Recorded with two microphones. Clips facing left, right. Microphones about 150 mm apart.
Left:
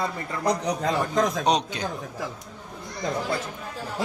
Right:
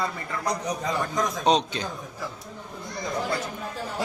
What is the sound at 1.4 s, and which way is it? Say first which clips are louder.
Speech: right 1 dB; 15° left (ahead or behind).